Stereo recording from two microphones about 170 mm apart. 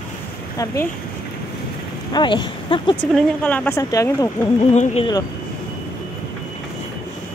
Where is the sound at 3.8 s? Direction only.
20° left (ahead or behind).